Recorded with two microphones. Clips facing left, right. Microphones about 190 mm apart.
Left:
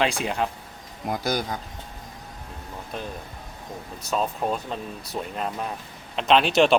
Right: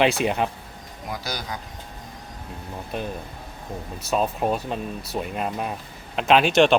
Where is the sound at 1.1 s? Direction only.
50° left (ahead or behind).